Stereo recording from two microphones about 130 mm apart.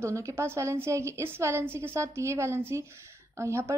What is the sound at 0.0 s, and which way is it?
A woman's voice, 20° right (ahead or behind).